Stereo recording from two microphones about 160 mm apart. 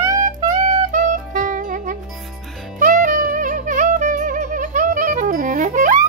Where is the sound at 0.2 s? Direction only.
55° right (ahead or behind).